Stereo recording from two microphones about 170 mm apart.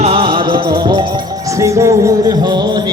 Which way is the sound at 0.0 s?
35° right (ahead or behind).